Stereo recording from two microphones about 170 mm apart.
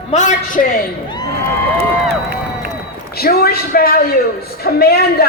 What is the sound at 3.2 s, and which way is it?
A man's voice, 65° left (ahead or behind).